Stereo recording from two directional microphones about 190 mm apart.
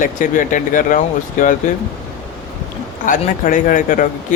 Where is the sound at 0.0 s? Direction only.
45° left (ahead or behind).